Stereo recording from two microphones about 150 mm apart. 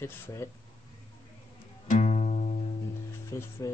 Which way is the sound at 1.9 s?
45° left (ahead or behind).